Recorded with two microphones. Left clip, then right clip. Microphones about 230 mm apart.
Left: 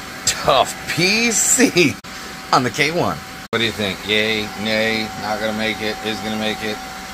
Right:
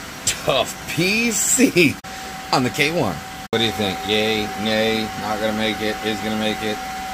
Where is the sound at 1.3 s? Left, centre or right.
Centre.